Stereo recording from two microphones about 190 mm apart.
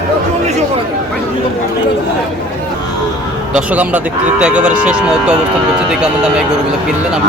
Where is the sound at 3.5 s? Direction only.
5° right (ahead or behind).